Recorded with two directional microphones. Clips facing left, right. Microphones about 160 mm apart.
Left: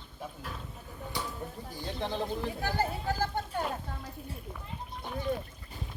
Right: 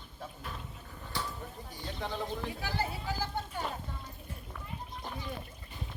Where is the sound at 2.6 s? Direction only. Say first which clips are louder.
Left 4 dB; 45° left (ahead or behind).